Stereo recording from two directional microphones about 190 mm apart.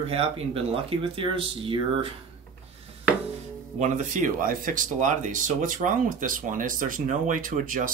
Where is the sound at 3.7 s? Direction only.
40° right (ahead or behind).